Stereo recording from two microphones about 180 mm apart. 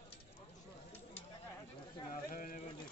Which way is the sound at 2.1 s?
50° left (ahead or behind).